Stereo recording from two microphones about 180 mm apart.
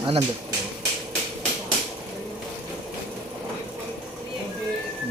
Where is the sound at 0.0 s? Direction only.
25° right (ahead or behind).